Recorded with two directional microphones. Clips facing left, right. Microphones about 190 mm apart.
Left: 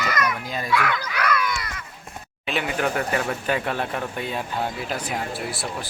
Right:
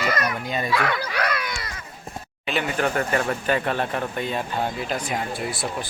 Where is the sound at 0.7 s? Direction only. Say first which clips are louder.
Left 2 dB; 35° right (ahead or behind).